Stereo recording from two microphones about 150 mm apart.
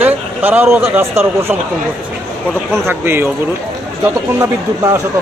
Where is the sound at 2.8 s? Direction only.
15° right (ahead or behind).